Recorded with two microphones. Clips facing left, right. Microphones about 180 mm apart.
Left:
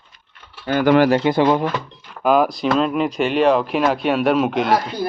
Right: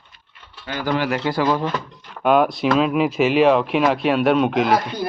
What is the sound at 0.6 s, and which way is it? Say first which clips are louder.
Speech: left 8 dB; 60° left (ahead or behind).